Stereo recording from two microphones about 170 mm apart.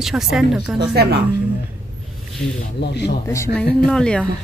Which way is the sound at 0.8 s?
70° right (ahead or behind).